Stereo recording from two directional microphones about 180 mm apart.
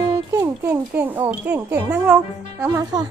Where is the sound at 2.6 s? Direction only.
20° right (ahead or behind).